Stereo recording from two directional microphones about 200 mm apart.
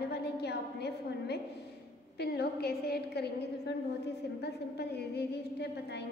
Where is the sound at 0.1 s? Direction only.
55° left (ahead or behind).